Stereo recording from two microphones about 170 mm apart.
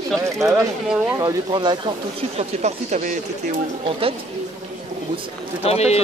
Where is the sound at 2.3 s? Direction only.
40° right (ahead or behind).